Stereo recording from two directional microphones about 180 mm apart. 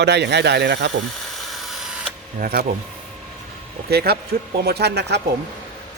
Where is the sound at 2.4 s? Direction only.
60° right (ahead or behind).